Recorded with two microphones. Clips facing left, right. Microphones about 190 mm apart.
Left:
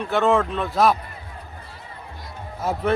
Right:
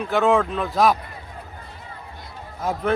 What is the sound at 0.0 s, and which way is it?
Speech, centre (ahead or behind).